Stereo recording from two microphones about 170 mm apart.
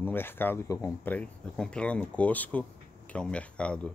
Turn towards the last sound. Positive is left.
turn(degrees=5)  # may be behind; listen again after turning